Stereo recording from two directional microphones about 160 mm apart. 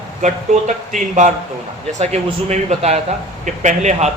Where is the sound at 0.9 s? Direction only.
50° right (ahead or behind).